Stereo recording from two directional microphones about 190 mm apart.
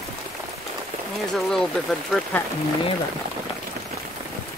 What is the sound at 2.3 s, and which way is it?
Speech, 10° left (ahead or behind).